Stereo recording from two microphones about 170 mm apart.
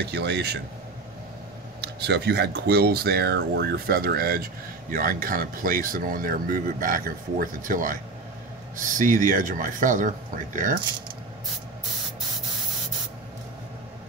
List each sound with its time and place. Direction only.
0.0 s speech: 80° right
1.8 s speech: 80° right; by 10.8 s 50° right (ahead or behind)